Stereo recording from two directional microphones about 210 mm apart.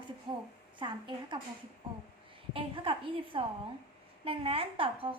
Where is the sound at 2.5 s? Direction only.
25° right (ahead or behind).